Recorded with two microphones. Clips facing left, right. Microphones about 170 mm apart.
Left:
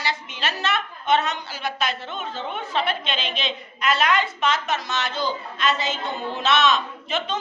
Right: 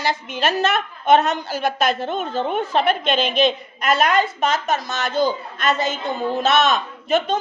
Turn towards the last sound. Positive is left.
turn(degrees=-50)  # may be behind; listen again after turning